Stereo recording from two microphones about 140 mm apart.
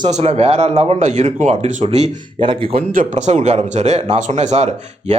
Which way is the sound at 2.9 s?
60° right (ahead or behind).